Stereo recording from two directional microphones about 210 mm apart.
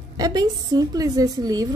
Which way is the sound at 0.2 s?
20° right (ahead or behind).